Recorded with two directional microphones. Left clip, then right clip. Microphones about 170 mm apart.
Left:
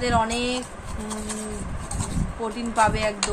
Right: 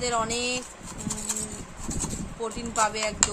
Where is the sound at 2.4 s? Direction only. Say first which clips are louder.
Left 5 dB; 25° right (ahead or behind).